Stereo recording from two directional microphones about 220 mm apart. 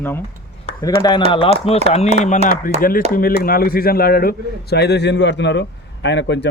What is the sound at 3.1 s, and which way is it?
A man's voice, 40° left (ahead or behind).